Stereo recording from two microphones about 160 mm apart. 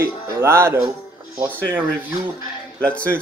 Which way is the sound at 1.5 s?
10° left (ahead or behind).